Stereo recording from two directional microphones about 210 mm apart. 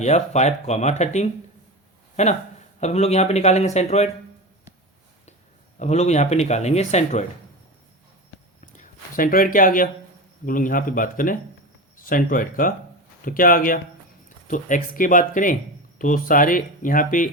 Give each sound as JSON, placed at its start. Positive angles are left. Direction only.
{"t": 0.0, "sound": "speech", "side_deg": 35}
{"t": 5.8, "sound": "speech", "side_deg": 30}
{"t": 8.6, "sound": "a sound", "side_deg": 40}
{"t": 10.4, "sound": "speech", "side_deg": 40}